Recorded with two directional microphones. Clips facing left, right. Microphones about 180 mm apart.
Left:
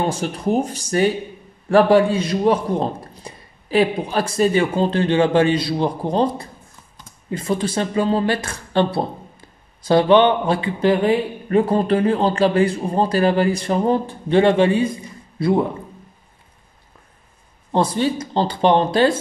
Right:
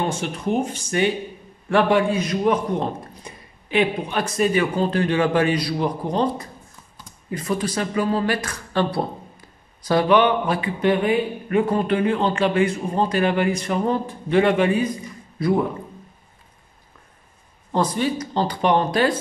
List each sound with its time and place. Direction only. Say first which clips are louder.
0.0 s a man's voice: left 3 dB; 35° left (ahead or behind)
17.7 s speech: left 3 dB; 30° left (ahead or behind)